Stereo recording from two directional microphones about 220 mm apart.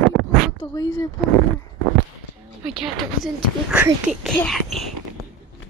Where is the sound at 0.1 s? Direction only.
Centre (ahead or behind).